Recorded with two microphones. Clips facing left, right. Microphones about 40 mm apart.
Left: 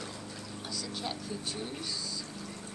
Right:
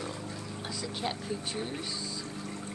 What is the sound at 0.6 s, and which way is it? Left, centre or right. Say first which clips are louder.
Speech: right 3 dB; right.